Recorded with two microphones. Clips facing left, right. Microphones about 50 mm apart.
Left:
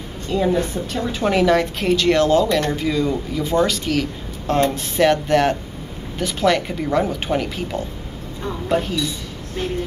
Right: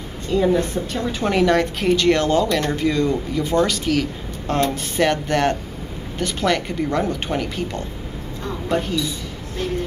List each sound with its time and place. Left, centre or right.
0.3 s a woman's voice: centre